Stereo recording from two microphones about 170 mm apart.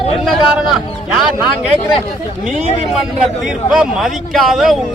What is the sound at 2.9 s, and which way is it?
A man's voice, 5° right (ahead or behind).